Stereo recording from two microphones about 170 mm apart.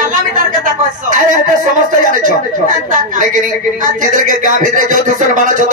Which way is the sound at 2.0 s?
50° right (ahead or behind).